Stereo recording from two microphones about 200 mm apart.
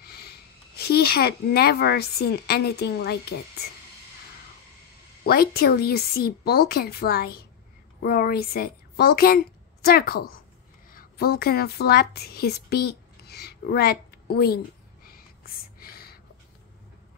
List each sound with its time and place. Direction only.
0.0 s speech: 50° left (ahead or behind)
5.2 s a woman's voice: 50° left (ahead or behind)
15.0 s a sound: 50° left (ahead or behind)